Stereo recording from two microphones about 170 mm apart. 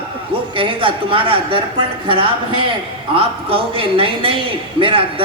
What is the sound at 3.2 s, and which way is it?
A woman's voice, 30° right (ahead or behind).